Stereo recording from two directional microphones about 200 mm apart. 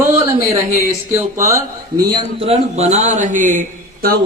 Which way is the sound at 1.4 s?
15° right (ahead or behind).